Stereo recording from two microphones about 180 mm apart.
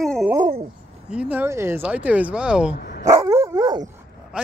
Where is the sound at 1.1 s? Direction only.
10° right (ahead or behind).